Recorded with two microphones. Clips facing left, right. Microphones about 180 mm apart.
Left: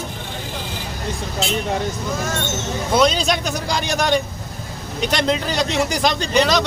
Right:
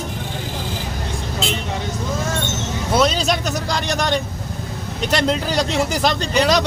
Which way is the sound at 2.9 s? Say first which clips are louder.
Left 1 dB; 5° right (ahead or behind).